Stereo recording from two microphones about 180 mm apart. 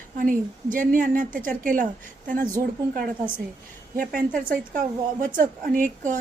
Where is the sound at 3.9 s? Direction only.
50° right (ahead or behind).